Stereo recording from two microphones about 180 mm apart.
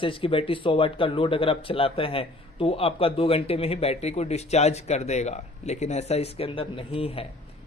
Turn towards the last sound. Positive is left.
turn(degrees=30)  # may be behind; listen again after turning